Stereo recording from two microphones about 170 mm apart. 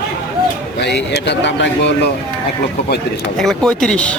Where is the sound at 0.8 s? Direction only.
85° left.